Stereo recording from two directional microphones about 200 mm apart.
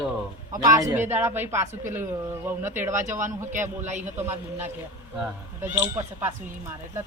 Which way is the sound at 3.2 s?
40° right (ahead or behind).